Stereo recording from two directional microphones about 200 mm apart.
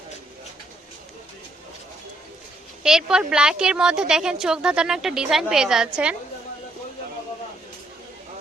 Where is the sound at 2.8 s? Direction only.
5° right (ahead or behind).